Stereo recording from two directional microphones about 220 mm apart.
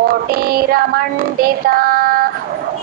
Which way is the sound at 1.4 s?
40° right (ahead or behind).